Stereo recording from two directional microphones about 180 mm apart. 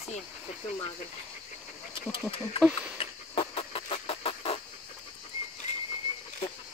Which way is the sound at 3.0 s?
30° left (ahead or behind).